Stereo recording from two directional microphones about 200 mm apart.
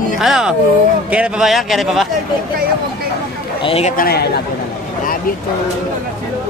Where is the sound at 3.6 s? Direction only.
30° left (ahead or behind).